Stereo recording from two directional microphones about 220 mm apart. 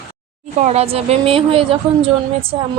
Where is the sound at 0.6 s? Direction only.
30° right (ahead or behind).